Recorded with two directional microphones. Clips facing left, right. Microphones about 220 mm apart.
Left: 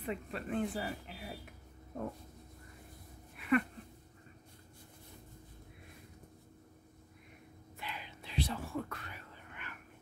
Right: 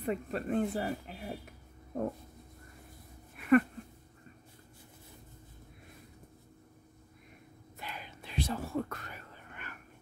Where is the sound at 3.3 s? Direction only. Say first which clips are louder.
Right 6 dB; 45° right (ahead or behind).